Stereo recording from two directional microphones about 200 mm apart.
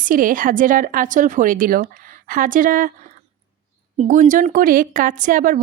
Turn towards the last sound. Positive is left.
turn(degrees=-40)  # may be behind; listen again after turning